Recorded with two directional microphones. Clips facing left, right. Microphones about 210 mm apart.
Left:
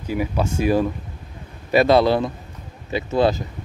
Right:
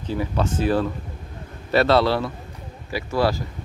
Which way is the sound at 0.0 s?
10° left (ahead or behind).